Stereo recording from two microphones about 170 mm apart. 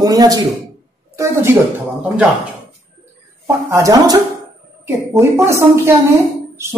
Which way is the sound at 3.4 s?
15° right (ahead or behind).